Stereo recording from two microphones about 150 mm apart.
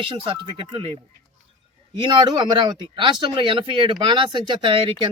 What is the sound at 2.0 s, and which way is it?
Speech, 30° right (ahead or behind).